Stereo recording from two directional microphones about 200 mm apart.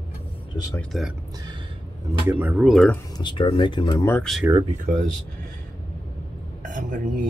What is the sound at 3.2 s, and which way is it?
Speech, 25° left (ahead or behind).